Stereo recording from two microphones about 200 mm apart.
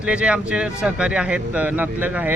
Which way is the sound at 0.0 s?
5° right (ahead or behind).